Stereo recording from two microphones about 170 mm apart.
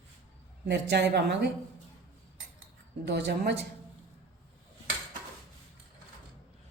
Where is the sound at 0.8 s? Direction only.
80° right.